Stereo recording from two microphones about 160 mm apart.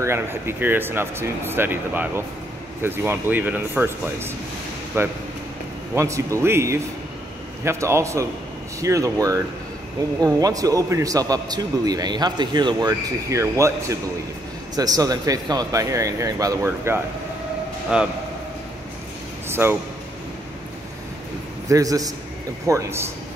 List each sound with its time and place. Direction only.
0.0 s a man's voice: 15° right (ahead or behind)
19.5 s speech: 15° right (ahead or behind)
21.6 s a man's voice: 20° right (ahead or behind)